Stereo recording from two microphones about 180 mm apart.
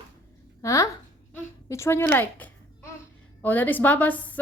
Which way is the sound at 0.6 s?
15° left (ahead or behind).